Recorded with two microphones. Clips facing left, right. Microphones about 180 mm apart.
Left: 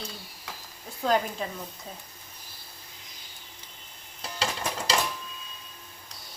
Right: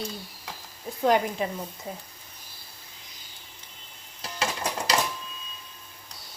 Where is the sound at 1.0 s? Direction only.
15° right (ahead or behind).